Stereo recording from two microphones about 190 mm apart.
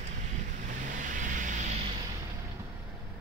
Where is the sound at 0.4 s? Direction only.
40° right (ahead or behind).